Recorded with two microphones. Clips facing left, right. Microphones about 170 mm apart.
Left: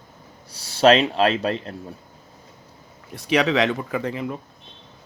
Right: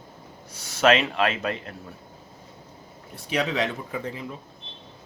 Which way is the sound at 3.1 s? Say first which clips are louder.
Left 6 dB; 90° left.